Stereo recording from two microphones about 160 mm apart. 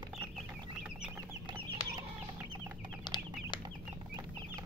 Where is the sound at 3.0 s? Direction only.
25° left (ahead or behind).